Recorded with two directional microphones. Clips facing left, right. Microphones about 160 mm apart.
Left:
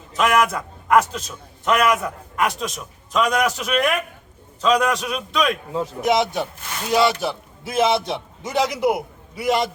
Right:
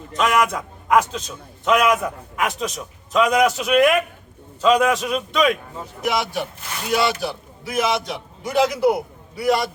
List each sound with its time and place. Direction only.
0.1 s a man's voice: centre (ahead or behind)
6.0 s a man's voice: 20° left (ahead or behind)